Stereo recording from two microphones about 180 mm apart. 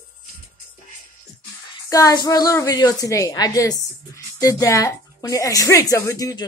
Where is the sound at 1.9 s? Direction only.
20° left (ahead or behind).